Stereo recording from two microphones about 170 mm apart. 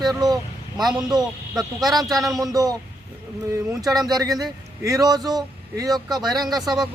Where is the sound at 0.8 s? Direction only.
5° right (ahead or behind).